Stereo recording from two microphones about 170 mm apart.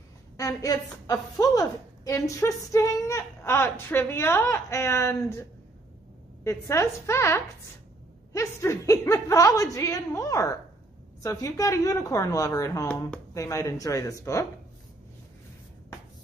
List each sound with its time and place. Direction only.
0.4 s a woman's voice: 20° left (ahead or behind)